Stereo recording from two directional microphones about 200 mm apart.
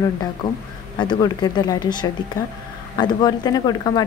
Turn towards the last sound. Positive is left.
turn(degrees=20)  # may be behind; listen again after turning